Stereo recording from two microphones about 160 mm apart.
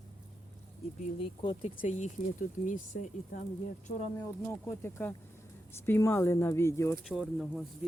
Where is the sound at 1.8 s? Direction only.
50° left (ahead or behind).